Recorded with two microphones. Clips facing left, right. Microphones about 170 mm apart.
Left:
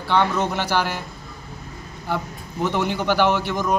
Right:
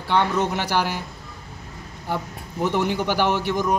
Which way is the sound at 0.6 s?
15° right (ahead or behind).